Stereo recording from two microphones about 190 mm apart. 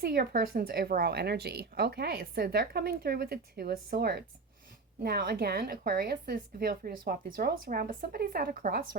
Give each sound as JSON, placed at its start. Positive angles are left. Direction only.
{"t": 0.0, "sound": "speech", "side_deg": -55}